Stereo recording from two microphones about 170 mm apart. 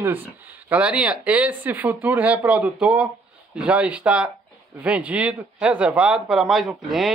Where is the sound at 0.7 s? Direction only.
5° right (ahead or behind).